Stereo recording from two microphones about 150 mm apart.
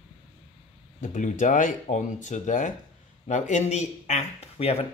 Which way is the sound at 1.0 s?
55° left (ahead or behind).